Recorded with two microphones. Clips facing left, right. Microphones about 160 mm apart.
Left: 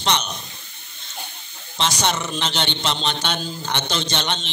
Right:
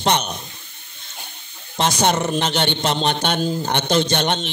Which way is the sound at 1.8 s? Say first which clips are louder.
Right 5 dB; 50° right (ahead or behind).